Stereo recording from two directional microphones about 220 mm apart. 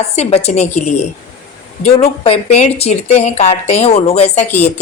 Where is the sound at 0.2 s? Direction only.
30° left (ahead or behind).